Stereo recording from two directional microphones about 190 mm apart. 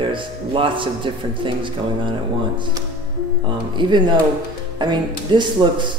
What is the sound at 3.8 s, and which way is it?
Speech, 25° right (ahead or behind).